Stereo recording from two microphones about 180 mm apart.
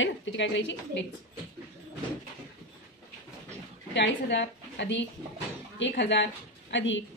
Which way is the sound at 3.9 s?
75° left (ahead or behind).